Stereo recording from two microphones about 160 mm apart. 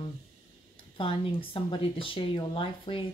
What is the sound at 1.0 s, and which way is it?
Speech, 35° left (ahead or behind).